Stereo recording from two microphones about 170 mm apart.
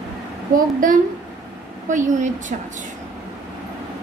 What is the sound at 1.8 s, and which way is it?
Speech, 45° right (ahead or behind).